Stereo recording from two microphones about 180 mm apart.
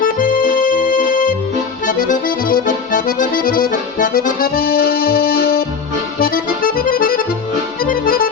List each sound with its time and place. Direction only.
0.0 s music: 50° left (ahead or behind)
1.9 s accordion: 50° left (ahead or behind)